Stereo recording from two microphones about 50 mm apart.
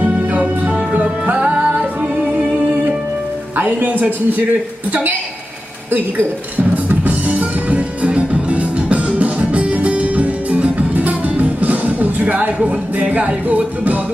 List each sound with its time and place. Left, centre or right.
0.3 s music: right
3.5 s speech: right
4.9 s music: right
6.8 s music: right